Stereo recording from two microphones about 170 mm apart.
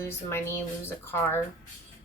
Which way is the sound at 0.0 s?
15° left (ahead or behind).